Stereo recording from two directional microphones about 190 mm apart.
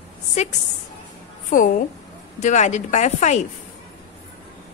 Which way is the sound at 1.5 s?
45° left (ahead or behind).